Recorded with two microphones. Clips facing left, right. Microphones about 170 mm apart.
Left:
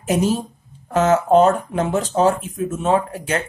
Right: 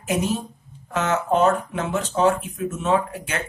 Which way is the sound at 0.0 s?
35° left (ahead or behind).